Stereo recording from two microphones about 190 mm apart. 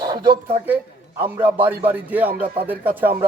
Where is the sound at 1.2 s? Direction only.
10° right (ahead or behind).